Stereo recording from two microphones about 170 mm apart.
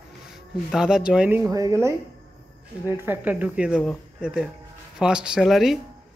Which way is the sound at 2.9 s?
10° right (ahead or behind).